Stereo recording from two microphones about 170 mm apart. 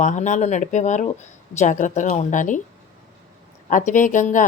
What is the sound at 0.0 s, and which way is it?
Speech, 45° left (ahead or behind).